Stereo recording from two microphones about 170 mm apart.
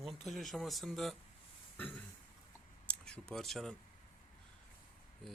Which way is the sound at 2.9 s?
5° left (ahead or behind).